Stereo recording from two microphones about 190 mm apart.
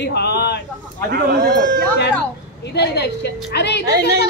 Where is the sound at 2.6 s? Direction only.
60° left (ahead or behind).